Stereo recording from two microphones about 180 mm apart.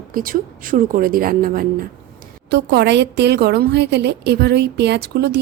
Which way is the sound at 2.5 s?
70° right (ahead or behind).